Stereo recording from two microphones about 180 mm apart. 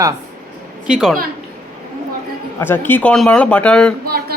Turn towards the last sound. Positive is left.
turn(degrees=-55)  # may be behind; listen again after turning